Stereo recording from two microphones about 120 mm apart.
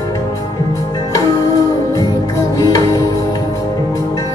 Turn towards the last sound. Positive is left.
turn(degrees=30)  # may be behind; listen again after turning